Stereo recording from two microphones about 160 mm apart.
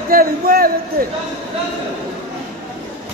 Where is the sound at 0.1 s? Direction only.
70° right (ahead or behind).